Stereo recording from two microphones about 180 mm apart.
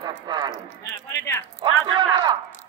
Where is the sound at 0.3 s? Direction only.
25° right (ahead or behind).